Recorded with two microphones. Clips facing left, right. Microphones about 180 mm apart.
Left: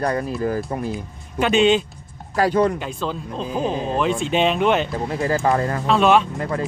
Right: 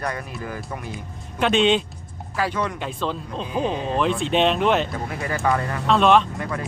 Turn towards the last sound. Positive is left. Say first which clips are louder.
# left 4 dB
turn(degrees=30)  # may be behind; listen again after turning